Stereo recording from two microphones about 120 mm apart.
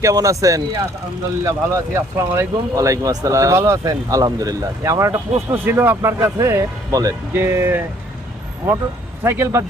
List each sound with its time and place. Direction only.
0.0 s speech: 25° right (ahead or behind)
7.3 s speech: 20° right (ahead or behind)
9.2 s speech: 20° right (ahead or behind)